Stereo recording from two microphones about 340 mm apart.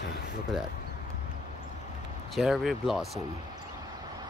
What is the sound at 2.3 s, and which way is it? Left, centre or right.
Speech, centre.